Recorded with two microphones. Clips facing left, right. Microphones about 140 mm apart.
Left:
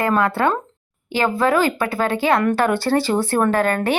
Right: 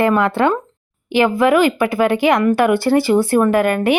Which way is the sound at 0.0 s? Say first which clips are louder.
Right 3 dB; 20° right (ahead or behind).